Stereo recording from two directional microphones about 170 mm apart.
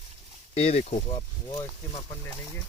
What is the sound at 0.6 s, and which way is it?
Speech, 40° left (ahead or behind).